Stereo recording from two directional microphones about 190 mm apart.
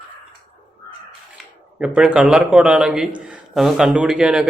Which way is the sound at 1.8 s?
5° right (ahead or behind).